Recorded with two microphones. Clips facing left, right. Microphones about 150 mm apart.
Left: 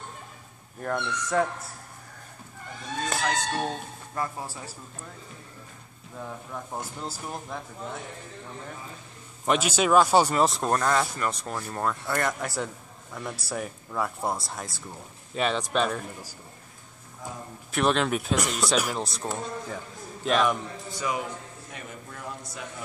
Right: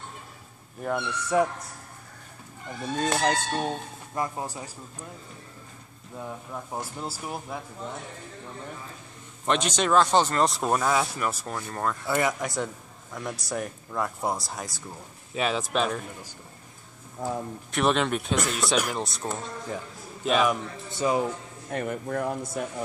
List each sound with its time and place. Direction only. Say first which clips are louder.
0.8 s speech: right 1 dB; 10° right (ahead or behind)
3.5 s speech: right 1 dB; 15° right (ahead or behind)
6.1 s speech: right 1 dB; 5° right (ahead or behind)
9.5 s speech: left 1 dB; 5° left (ahead or behind)
17.2 s a man's voice: right 9 dB; 55° right (ahead or behind)
17.6 s speech: even; centre (ahead or behind)
20.9 s speech: right 6 dB; 30° right (ahead or behind)
21.6 s a man's voice: right 17 dB; 55° right (ahead or behind)